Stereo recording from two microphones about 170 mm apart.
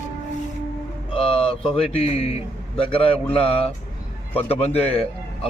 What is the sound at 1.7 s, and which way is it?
A man's voice, 35° left (ahead or behind).